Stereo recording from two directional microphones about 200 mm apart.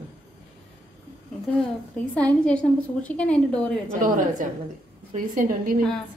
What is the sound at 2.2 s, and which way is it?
A woman's voice, 5° left (ahead or behind).